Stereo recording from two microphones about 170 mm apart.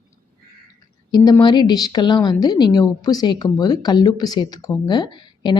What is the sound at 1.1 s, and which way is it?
A woman's voice, 25° left (ahead or behind).